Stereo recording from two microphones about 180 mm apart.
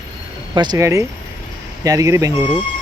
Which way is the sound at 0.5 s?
25° right (ahead or behind).